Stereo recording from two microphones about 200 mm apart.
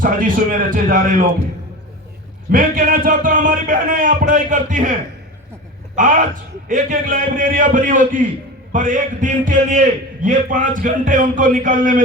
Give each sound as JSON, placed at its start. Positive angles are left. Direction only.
{"t": 0.0, "sound": "a man's voice", "side_deg": -45}
{"t": 2.5, "sound": "a man's voice", "side_deg": -45}
{"t": 6.0, "sound": "a man's voice", "side_deg": -40}